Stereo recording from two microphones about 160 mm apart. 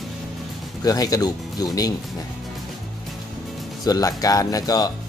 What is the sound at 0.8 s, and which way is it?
Speech, 25° left (ahead or behind).